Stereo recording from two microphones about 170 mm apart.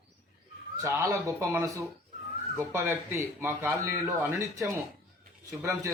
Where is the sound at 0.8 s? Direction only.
15° right (ahead or behind).